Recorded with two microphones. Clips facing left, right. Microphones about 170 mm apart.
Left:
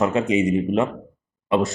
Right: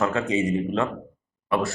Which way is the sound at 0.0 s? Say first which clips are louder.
Left 4 dB; 20° left (ahead or behind).